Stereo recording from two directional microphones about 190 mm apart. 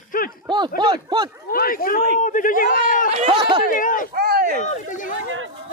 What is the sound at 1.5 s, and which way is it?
Speech, 50° left (ahead or behind).